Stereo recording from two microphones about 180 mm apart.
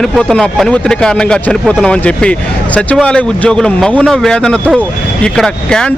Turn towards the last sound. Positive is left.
turn(degrees=5)  # may be behind; listen again after turning